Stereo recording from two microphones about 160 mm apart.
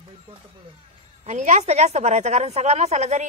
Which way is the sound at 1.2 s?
45° right (ahead or behind).